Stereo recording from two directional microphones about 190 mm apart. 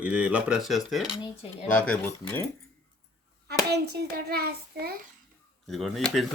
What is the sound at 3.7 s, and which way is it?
Child singing, 60° right (ahead or behind).